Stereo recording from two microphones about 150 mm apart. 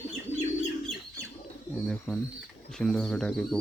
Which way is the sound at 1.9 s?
5° left (ahead or behind).